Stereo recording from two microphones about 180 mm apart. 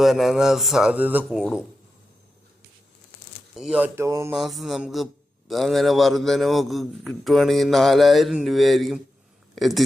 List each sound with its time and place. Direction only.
0.0 s a man's voice: centre (ahead or behind)
3.5 s speech: 5° right (ahead or behind)
4.4 s a man's voice: centre (ahead or behind)